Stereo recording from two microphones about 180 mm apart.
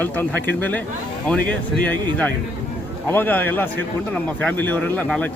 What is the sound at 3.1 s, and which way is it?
A man's voice, 10° left (ahead or behind).